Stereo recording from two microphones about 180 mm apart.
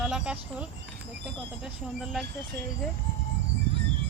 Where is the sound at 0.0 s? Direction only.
5° right (ahead or behind).